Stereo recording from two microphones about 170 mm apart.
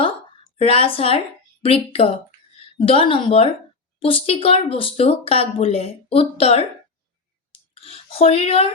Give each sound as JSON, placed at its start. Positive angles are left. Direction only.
{"t": 0.5, "sound": "speech", "side_deg": 35}
{"t": 7.8, "sound": "speech", "side_deg": 35}